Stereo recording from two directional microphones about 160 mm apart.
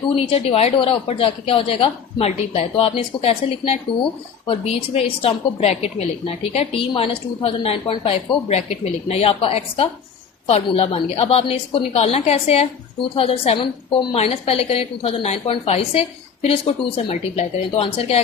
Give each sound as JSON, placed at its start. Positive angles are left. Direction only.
{"t": 0.2, "sound": "a woman's voice", "side_deg": 35}